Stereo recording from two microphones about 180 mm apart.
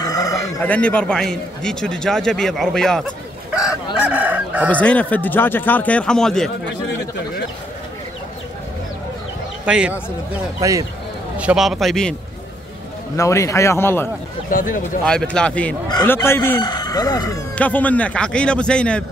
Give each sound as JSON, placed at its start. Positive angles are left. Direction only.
{"t": 0.0, "sound": "chicken", "side_deg": 20}
{"t": 0.6, "sound": "a man's voice", "side_deg": 5}
{"t": 3.5, "sound": "chicken", "side_deg": -5}
{"t": 4.6, "sound": "speech", "side_deg": 10}
{"t": 9.7, "sound": "a man's voice", "side_deg": -5}
{"t": 10.6, "sound": "speech", "side_deg": -20}
{"t": 11.3, "sound": "a man's voice", "side_deg": -5}
{"t": 13.1, "sound": "speech", "side_deg": 15}
{"t": 14.5, "sound": "speech", "side_deg": 50}
{"t": 15.0, "sound": "a man's voice", "side_deg": 5}
{"t": 17.6, "sound": "speech", "side_deg": 10}